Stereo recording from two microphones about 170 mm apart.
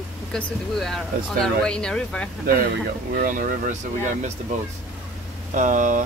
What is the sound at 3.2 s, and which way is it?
Speech, 50° right (ahead or behind).